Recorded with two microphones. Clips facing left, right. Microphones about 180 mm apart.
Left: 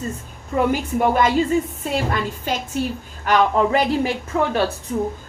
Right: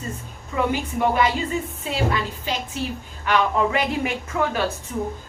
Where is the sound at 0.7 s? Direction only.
45° left (ahead or behind).